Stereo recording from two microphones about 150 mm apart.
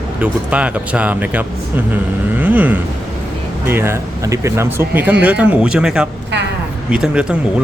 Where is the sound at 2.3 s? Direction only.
10° right (ahead or behind).